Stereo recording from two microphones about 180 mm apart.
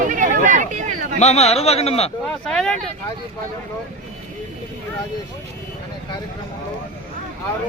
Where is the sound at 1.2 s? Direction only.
35° left (ahead or behind).